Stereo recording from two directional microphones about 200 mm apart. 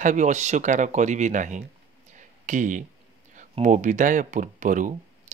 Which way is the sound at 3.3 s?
40° right (ahead or behind).